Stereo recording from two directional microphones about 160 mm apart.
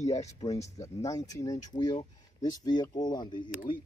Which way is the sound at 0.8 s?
20° left (ahead or behind).